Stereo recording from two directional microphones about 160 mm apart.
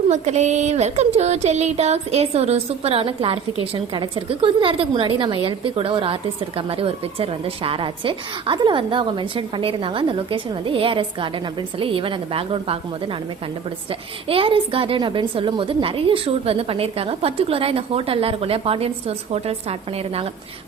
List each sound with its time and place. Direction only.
0.1 s music: 45° right (ahead or behind)
14.3 s music: 35° right (ahead or behind)